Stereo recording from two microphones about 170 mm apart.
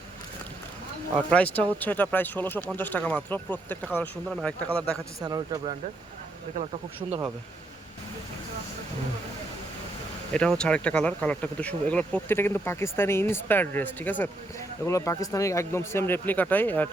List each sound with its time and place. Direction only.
1.5 s speech: 10° left (ahead or behind)
5.2 s speech: 25° right (ahead or behind)
7.0 s speech: 30° right (ahead or behind)
10.3 s speech: 5° left (ahead or behind)